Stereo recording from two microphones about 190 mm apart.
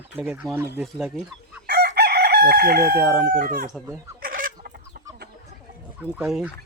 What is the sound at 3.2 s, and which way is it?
Speech, 50° right (ahead or behind).